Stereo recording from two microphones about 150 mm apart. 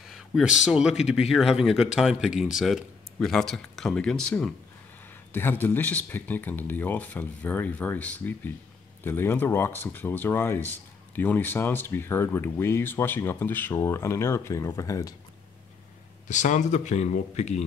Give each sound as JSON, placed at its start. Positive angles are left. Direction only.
{"t": 0.0, "sound": "a sound", "side_deg": -5}
{"t": 0.7, "sound": "speech", "side_deg": -5}
{"t": 16.3, "sound": "speech", "side_deg": 55}